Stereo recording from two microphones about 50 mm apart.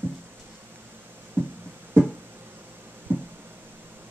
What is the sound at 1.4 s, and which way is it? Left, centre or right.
Music, right.